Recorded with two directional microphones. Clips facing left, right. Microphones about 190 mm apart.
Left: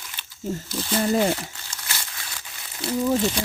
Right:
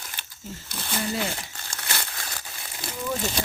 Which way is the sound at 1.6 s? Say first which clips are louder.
Right 2 dB; 55° right (ahead or behind).